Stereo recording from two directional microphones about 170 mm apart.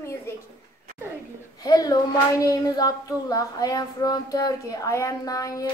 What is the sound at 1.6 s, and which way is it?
A woman's voice, 20° left (ahead or behind).